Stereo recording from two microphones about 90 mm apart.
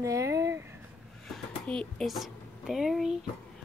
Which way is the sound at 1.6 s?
10° left (ahead or behind).